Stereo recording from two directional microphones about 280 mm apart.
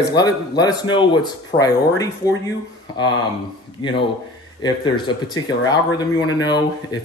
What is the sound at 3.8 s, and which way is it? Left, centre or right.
Speech, centre.